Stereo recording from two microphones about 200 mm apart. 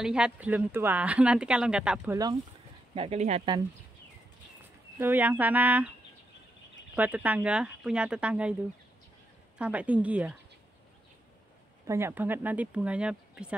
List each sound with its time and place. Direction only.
0.0 s speech: 5° right (ahead or behind)
2.9 s speech: 30° right (ahead or behind)
4.9 s speech: 10° right (ahead or behind)
7.0 s speech: 10° right (ahead or behind)
9.6 s speech: 5° right (ahead or behind)
11.9 s speech: 10° right (ahead or behind)